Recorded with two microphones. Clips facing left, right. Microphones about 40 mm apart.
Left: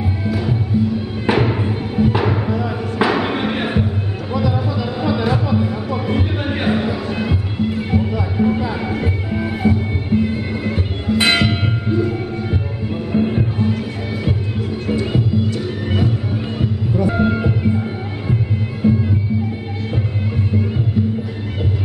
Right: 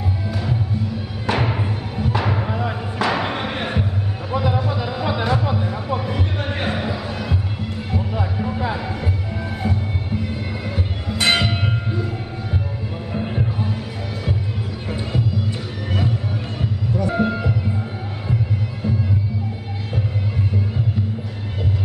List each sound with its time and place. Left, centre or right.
1.3 s music: centre
2.4 s music: centre
3.0 s music: centre
4.3 s music: centre
5.1 s a sound: centre
6.0 s music: centre
8.4 s a sound: centre
8.9 s music: centre
11.2 s church bell: centre
13.1 s music: centre
15.1 s music: centre